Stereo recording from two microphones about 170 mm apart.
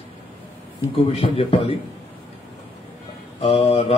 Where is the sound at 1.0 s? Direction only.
35° left (ahead or behind).